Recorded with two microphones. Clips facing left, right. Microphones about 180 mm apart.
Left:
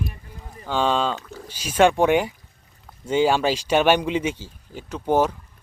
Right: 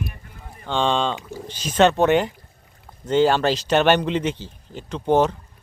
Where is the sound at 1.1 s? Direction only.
15° right (ahead or behind).